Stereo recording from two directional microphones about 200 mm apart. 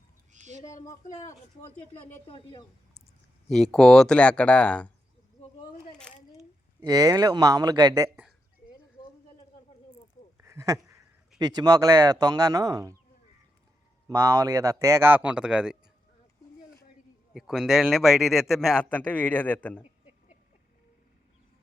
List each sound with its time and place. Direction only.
0.3 s a sound: 35° right (ahead or behind)
0.6 s speech: 15° left (ahead or behind)
0.9 s speech: 35° left (ahead or behind)
2.2 s a woman's voice: 25° left (ahead or behind)
3.5 s speech: centre (ahead or behind)
6.7 s speech: 20° right (ahead or behind)
9.0 s a sound: 20° left (ahead or behind)
10.3 s a sound: 15° right (ahead or behind)
11.3 s speech: 20° right (ahead or behind)
14.1 s a man's voice: 20° right (ahead or behind)
17.3 s speech: centre (ahead or behind)